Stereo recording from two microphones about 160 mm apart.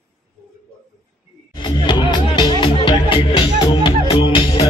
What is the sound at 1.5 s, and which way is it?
Music, 30° left (ahead or behind).